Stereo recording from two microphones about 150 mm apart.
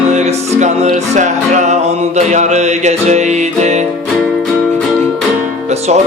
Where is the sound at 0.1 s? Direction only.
50° right (ahead or behind).